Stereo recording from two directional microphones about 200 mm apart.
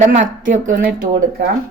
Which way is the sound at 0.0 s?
35° right (ahead or behind).